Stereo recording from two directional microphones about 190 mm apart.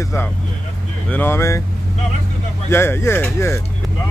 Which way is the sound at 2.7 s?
10° left (ahead or behind).